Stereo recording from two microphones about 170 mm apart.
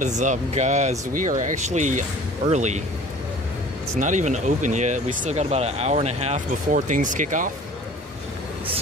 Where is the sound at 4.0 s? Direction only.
45° right (ahead or behind).